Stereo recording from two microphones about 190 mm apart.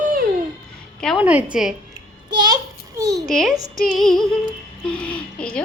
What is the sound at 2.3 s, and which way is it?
Speech, 20° right (ahead or behind).